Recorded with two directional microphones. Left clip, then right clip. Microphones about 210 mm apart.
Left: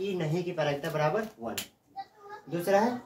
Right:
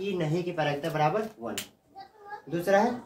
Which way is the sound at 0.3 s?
20° right (ahead or behind).